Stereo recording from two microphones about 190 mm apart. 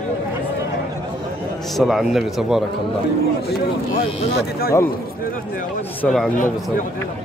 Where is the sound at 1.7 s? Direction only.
Centre (ahead or behind).